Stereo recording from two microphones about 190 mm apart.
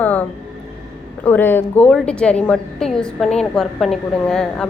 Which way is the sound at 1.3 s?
10° left (ahead or behind).